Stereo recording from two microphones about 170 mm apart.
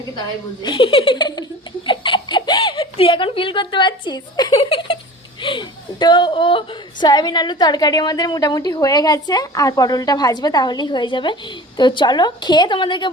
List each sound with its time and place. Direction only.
0.6 s a woman's voice: 30° left (ahead or behind)